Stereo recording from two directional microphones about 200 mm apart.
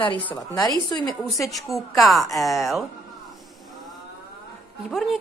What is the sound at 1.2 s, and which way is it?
A woman's voice, centre (ahead or behind).